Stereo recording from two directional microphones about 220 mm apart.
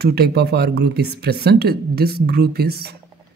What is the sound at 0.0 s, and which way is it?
Speech, 45° right (ahead or behind).